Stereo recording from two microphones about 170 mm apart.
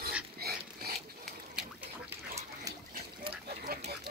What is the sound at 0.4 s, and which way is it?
Pig, 65° right (ahead or behind).